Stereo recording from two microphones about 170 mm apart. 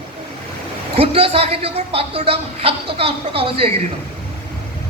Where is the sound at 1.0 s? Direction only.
35° right (ahead or behind).